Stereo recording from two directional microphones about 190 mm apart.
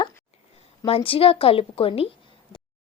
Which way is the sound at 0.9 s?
30° left (ahead or behind).